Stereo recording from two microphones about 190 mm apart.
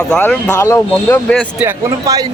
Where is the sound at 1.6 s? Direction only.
20° right (ahead or behind).